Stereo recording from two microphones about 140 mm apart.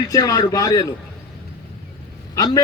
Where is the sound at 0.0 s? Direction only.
20° left (ahead or behind).